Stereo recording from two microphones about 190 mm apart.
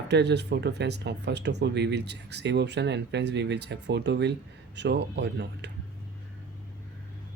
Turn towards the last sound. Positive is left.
turn(degrees=-65)  # may be behind; listen again after turning